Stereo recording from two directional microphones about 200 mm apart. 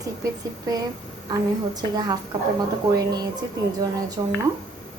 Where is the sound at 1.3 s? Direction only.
20° right (ahead or behind).